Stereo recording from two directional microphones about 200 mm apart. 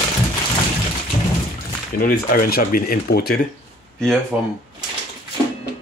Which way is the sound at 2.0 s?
45° left (ahead or behind).